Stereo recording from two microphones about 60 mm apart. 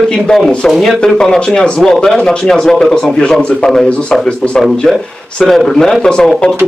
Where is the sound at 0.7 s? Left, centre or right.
Centre.